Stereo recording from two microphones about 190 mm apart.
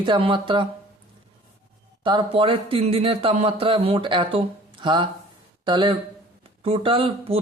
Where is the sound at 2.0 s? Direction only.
25° right (ahead or behind).